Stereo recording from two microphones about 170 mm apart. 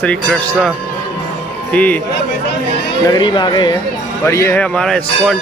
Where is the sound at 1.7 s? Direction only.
10° left (ahead or behind).